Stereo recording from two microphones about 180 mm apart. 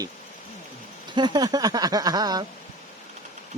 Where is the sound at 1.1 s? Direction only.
25° right (ahead or behind).